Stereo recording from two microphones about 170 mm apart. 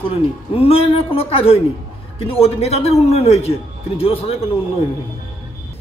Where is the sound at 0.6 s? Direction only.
35° left (ahead or behind).